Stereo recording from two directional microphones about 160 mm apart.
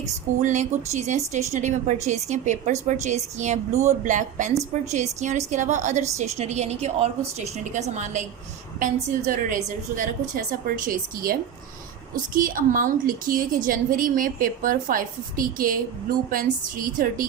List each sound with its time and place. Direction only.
0.4 s a woman's voice: 50° right (ahead or behind)